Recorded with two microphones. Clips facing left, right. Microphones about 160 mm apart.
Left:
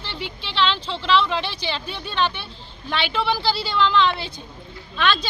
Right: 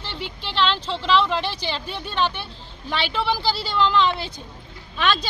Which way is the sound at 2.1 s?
10° right (ahead or behind).